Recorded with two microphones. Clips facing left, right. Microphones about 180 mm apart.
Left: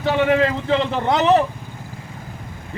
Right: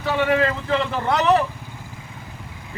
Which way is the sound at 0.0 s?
30° left (ahead or behind).